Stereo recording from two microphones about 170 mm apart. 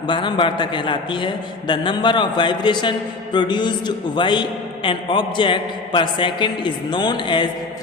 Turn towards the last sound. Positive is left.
turn(degrees=25)  # may be behind; listen again after turning